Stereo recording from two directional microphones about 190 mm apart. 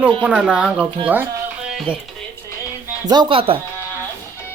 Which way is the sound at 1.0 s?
10° right (ahead or behind).